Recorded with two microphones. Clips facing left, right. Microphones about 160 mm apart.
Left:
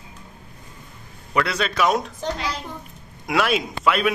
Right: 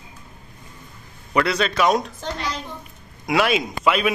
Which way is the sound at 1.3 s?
Centre (ahead or behind).